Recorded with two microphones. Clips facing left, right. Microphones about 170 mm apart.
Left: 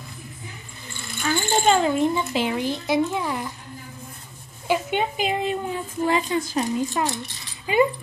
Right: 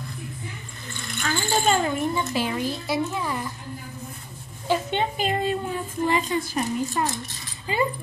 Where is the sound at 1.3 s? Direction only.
20° left (ahead or behind).